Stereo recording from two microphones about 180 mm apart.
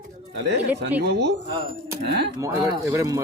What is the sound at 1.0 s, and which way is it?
Speech, 70° right (ahead or behind).